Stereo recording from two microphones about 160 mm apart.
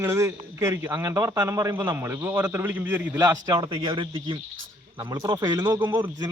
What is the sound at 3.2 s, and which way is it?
A man's voice, 25° right (ahead or behind).